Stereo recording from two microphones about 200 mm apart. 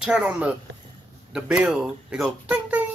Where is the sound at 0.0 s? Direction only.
5° right (ahead or behind).